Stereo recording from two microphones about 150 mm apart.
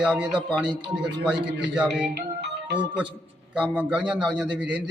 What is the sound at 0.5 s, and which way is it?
Speech, 30° right (ahead or behind).